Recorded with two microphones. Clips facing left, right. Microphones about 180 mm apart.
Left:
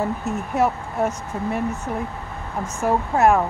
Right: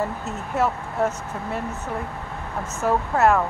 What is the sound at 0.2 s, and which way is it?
Speech, 10° left (ahead or behind).